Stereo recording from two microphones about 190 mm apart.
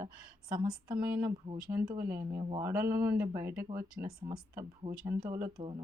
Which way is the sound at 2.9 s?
55° right (ahead or behind).